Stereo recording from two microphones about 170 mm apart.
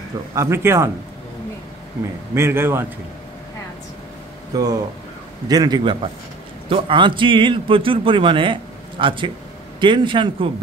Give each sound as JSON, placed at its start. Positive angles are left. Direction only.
{"t": 0.3, "sound": "a man's voice", "side_deg": -15}
{"t": 2.3, "sound": "a man's voice", "side_deg": -15}
{"t": 4.5, "sound": "a man's voice", "side_deg": -20}